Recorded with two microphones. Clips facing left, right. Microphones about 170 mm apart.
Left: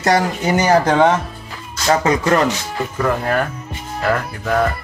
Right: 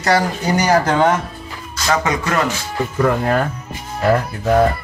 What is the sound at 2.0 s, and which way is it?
Speech, 30° left (ahead or behind).